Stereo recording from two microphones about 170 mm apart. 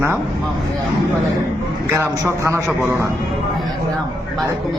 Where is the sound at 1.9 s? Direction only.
20° right (ahead or behind).